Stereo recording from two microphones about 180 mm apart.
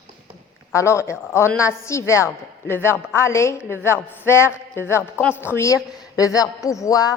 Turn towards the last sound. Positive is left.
turn(degrees=20)  # may be behind; listen again after turning